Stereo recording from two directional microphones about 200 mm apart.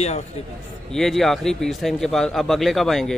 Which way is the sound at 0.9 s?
Centre (ahead or behind).